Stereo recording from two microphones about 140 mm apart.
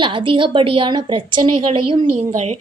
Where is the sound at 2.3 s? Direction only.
50° right (ahead or behind).